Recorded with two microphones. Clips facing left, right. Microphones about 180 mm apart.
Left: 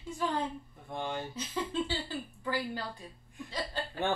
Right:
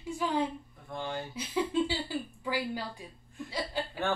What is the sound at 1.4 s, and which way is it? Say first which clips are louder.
A woman's voice: right 7 dB; 10° right (ahead or behind).